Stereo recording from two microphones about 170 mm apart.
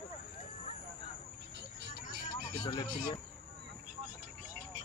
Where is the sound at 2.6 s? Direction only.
25° left (ahead or behind).